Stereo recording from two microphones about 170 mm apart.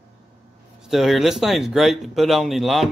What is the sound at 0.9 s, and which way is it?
A man's voice, centre (ahead or behind).